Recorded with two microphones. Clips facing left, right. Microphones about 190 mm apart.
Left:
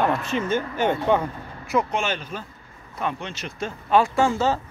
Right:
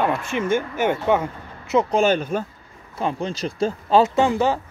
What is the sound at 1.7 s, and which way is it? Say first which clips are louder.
Speech: right 4 dB; 25° right (ahead or behind).